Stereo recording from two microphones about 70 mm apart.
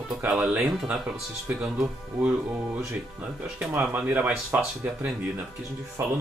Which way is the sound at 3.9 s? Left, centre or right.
Right.